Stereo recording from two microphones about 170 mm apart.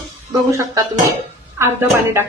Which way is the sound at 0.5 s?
20° right (ahead or behind).